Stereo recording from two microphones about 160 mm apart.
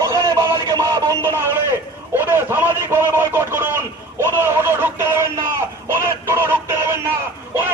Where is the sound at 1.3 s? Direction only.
15° right (ahead or behind).